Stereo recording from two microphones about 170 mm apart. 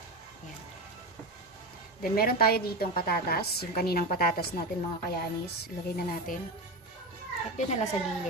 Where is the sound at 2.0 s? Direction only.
60° left (ahead or behind).